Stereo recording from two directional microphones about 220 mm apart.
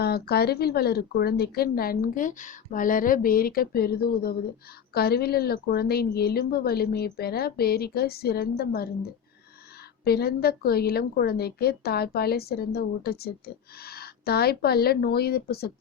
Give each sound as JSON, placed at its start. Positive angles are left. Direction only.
{"t": 0.0, "sound": "a woman's voice", "side_deg": 45}
{"t": 10.0, "sound": "a woman's voice", "side_deg": 45}